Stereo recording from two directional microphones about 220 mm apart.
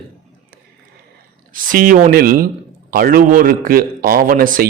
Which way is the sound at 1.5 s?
40° right (ahead or behind).